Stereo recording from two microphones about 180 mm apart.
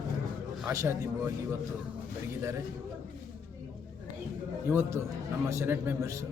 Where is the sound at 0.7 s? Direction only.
15° right (ahead or behind).